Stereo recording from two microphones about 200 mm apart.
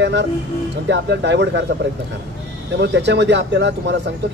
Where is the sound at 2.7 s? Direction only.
60° right (ahead or behind).